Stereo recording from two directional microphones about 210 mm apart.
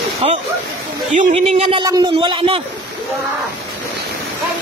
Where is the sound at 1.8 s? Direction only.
20° right (ahead or behind).